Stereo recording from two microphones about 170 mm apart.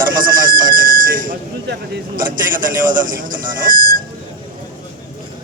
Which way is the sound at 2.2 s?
55° right (ahead or behind).